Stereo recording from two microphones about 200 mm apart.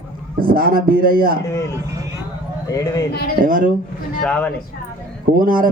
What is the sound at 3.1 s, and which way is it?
Speech, 50° left (ahead or behind).